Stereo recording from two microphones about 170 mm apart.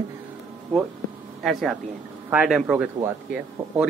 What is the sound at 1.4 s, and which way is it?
Speech, centre (ahead or behind).